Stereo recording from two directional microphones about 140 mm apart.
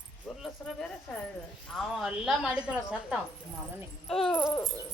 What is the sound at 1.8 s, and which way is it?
A woman's voice, centre (ahead or behind).